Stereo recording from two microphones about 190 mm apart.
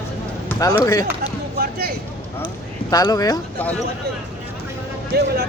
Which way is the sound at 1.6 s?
55° right (ahead or behind).